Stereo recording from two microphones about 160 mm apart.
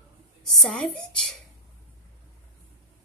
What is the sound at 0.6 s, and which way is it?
Speech, 5° left (ahead or behind).